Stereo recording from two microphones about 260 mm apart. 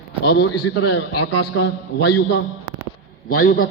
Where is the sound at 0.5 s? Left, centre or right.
Left.